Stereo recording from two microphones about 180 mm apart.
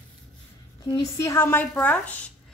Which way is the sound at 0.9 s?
15° left (ahead or behind).